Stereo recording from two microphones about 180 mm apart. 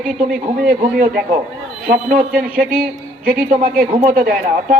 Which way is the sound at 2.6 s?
50° right (ahead or behind).